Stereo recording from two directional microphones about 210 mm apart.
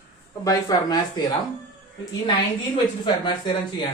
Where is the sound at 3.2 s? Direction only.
20° left (ahead or behind).